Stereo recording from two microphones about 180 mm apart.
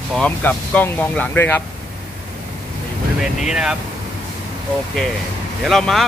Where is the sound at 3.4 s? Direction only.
5° right (ahead or behind).